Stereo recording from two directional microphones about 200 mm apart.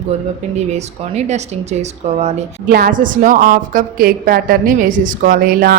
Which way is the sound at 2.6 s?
45° right (ahead or behind).